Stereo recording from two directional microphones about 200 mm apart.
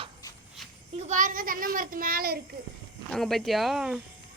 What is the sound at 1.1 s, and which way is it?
A child's voice, 40° right (ahead or behind).